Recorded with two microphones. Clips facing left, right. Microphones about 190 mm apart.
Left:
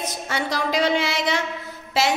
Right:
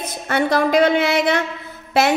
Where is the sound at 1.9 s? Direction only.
55° right (ahead or behind).